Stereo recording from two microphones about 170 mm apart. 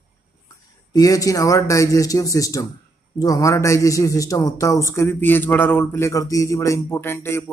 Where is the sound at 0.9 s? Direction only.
20° left (ahead or behind).